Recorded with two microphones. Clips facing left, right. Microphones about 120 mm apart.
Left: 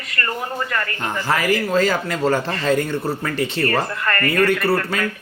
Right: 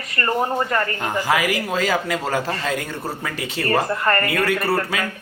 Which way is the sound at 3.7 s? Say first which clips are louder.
Right 2 dB; 25° right (ahead or behind).